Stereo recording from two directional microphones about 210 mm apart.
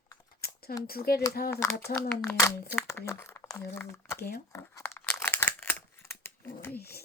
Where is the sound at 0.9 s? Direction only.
45° left (ahead or behind).